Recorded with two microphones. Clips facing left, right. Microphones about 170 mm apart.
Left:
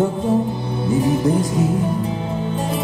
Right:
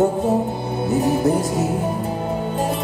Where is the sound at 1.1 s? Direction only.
5° right (ahead or behind).